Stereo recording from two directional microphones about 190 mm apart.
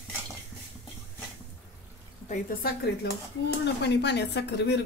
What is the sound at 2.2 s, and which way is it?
Speech, 40° left (ahead or behind).